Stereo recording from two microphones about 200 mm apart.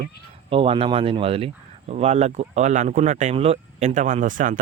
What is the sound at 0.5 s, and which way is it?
Speech, 25° right (ahead or behind).